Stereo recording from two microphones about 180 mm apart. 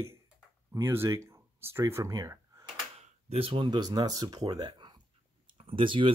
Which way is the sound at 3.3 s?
30° right (ahead or behind).